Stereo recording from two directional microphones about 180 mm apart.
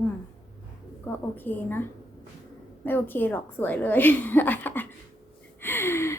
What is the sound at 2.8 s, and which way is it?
A woman's voice, 10° left (ahead or behind).